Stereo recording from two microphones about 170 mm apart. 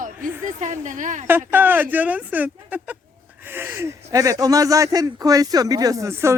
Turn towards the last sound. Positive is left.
turn(degrees=-15)  # may be behind; listen again after turning